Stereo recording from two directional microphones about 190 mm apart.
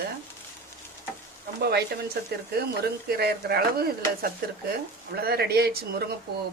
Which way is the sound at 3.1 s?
55° right (ahead or behind).